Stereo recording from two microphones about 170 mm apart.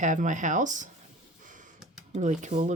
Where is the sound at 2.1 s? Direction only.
45° right (ahead or behind).